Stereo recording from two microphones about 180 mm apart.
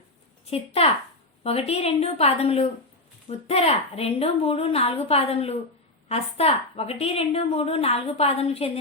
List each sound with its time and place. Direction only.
0.4 s a woman's voice: 35° left (ahead or behind)